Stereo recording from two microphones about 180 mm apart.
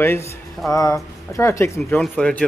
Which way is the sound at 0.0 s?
15° left (ahead or behind).